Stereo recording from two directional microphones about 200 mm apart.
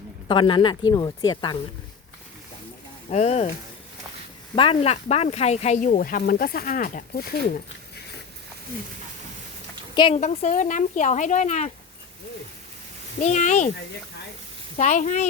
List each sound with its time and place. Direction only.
0.3 s speech: 25° left (ahead or behind)
3.1 s speech: 35° left (ahead or behind)
4.5 s speech: 25° left (ahead or behind); by 7.3 s 45° left (ahead or behind)
9.9 s speech: 25° left (ahead or behind)
10.2 s speech: 35° left (ahead or behind)
13.1 s speech: 35° left (ahead or behind)
14.8 s speech: 35° left (ahead or behind)